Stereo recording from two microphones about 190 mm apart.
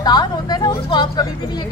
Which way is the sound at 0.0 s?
20° left (ahead or behind).